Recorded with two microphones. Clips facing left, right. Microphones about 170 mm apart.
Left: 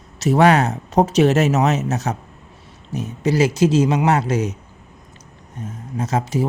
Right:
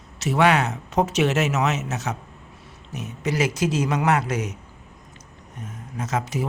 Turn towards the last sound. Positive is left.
turn(degrees=30)  # may be behind; listen again after turning